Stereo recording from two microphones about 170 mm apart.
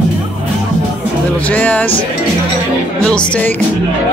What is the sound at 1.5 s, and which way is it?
Speech, 10° left (ahead or behind).